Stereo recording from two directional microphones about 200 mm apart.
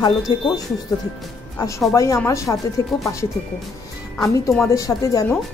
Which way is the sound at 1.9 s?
15° left (ahead or behind).